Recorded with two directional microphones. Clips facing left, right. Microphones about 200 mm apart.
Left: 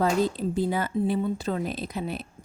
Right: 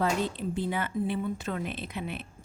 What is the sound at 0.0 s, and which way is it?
Speech, 40° left (ahead or behind).